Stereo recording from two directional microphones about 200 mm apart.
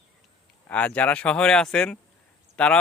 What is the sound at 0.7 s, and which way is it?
Speech, 5° left (ahead or behind).